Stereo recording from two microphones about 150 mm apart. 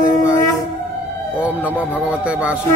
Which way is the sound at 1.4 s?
5° right (ahead or behind).